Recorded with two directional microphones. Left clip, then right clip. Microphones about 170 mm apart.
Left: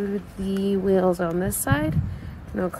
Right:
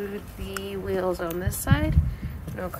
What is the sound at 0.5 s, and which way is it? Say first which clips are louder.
Speech: left 8 dB; 35° left (ahead or behind).